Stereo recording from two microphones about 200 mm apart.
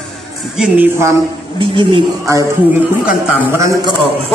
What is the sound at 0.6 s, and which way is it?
Speech, 10° right (ahead or behind).